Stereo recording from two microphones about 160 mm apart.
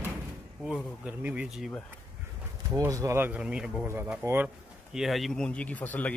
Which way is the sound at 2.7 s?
20° right (ahead or behind).